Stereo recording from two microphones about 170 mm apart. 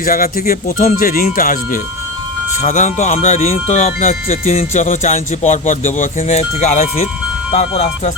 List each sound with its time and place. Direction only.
0.0 s speech: 55° left (ahead or behind)
2.6 s speech: 45° left (ahead or behind)